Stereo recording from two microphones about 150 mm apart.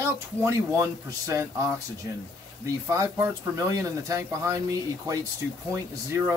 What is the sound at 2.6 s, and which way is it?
Speech, 20° right (ahead or behind).